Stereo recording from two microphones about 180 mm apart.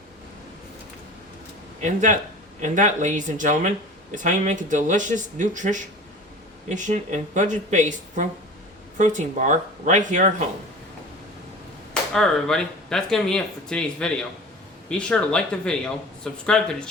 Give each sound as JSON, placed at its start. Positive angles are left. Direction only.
{"t": 1.8, "sound": "speech", "side_deg": -45}
{"t": 12.1, "sound": "speech", "side_deg": 5}